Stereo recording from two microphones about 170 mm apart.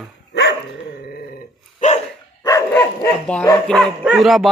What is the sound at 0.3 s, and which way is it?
Dog, 90° left.